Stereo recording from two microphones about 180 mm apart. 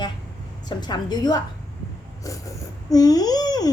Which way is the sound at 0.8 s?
25° left (ahead or behind).